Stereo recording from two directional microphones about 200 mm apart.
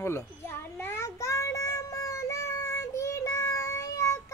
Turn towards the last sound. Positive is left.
turn(degrees=15)  # may be behind; listen again after turning